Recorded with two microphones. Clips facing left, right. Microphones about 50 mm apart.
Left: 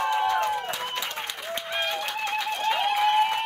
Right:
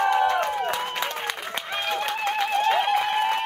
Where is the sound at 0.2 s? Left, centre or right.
Right.